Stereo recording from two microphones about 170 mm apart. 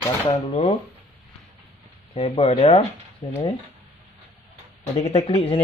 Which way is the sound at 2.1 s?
40° left (ahead or behind).